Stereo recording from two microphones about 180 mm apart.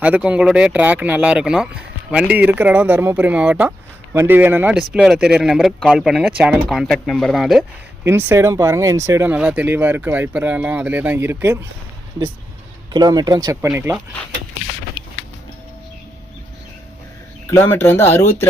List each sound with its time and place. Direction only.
0.0 s speech: 5° right (ahead or behind)
8.0 s speech: 15° right (ahead or behind)
12.9 s speech: 20° right (ahead or behind)
17.5 s speech: 15° left (ahead or behind)